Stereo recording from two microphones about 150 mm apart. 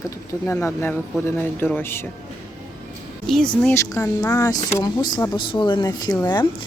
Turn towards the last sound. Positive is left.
turn(degrees=30)  # may be behind; listen again after turning